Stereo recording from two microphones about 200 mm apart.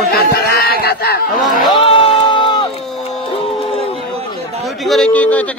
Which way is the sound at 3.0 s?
30° left (ahead or behind).